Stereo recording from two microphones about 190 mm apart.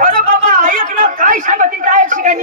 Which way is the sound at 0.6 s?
45° right (ahead or behind).